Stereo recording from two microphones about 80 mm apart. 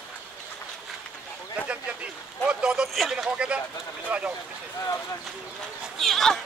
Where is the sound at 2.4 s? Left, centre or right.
Centre.